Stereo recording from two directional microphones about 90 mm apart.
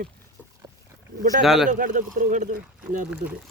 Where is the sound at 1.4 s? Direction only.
5° right (ahead or behind).